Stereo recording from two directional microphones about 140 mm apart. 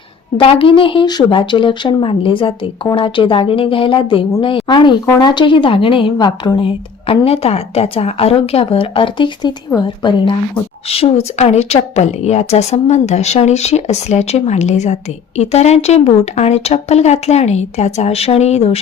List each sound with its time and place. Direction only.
0.3 s a woman's voice: 40° left (ahead or behind)